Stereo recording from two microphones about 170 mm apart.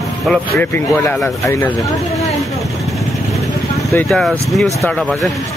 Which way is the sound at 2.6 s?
Centre (ahead or behind).